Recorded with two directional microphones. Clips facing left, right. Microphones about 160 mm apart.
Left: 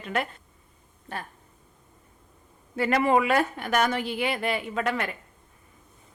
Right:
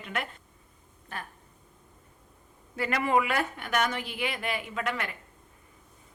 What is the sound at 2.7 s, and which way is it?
A woman's voice, 35° left (ahead or behind).